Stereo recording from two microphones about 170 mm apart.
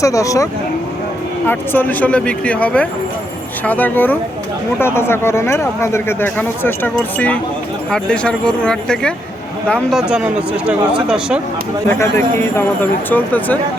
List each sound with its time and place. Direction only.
0.0 s speech: 20° left (ahead or behind)
1.5 s speech: 10° left (ahead or behind)
10.1 s speech: 5° right (ahead or behind)
11.9 s speech: 15° left (ahead or behind)